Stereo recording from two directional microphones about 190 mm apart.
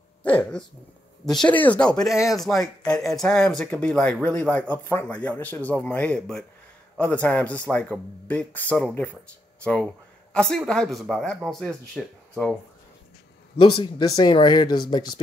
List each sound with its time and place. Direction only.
0.2 s hiccup: 5° left (ahead or behind)
1.2 s speech: 5° left (ahead or behind)
13.6 s speech: 25° left (ahead or behind)